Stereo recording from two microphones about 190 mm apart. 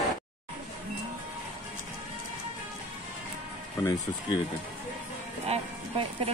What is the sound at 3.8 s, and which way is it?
Speech, 20° left (ahead or behind).